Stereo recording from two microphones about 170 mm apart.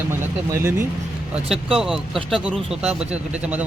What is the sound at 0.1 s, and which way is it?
Speech, 15° right (ahead or behind).